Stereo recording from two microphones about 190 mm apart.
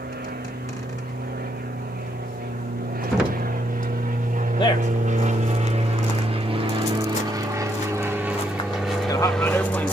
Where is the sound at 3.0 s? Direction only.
50° right (ahead or behind).